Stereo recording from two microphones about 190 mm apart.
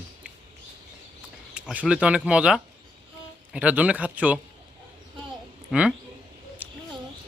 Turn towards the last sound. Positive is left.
turn(degrees=-10)  # may be behind; listen again after turning